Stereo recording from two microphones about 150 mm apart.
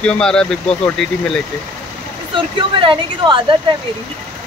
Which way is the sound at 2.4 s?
35° right (ahead or behind).